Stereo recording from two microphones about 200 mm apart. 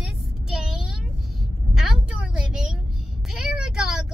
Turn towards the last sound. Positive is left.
turn(degrees=-5)  # may be behind; listen again after turning